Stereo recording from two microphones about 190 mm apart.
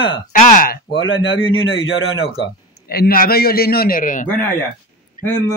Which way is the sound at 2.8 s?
55° left (ahead or behind).